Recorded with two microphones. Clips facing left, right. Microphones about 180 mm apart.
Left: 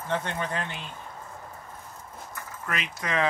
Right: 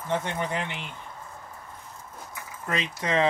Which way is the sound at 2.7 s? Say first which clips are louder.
Right 4 dB; 25° right (ahead or behind).